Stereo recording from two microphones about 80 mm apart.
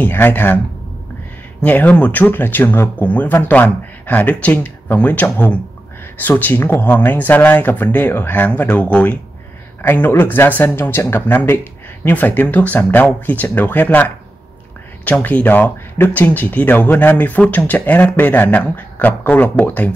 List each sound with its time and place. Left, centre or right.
0.0 s speech: left
1.6 s speech: centre